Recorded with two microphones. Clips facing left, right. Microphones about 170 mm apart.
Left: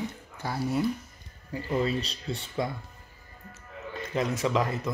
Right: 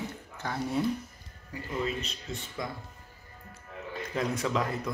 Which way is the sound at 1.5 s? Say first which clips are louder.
Left 5 dB; 35° left (ahead or behind).